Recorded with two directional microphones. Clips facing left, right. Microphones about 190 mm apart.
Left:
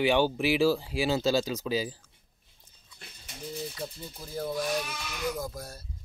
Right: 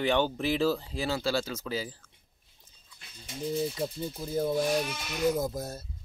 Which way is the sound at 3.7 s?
20° right (ahead or behind).